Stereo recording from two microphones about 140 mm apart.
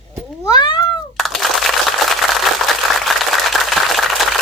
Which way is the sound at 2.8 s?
Centre (ahead or behind).